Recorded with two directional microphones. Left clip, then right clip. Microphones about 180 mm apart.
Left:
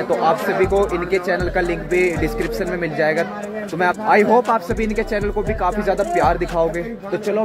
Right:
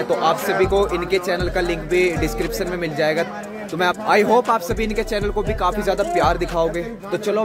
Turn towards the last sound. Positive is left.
turn(degrees=-15)  # may be behind; listen again after turning